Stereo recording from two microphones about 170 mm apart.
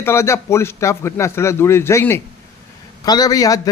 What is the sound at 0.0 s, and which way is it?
A man's voice, 15° left (ahead or behind).